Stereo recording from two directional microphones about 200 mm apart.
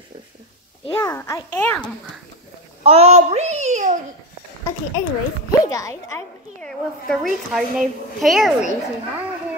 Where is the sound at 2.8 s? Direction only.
30° right (ahead or behind).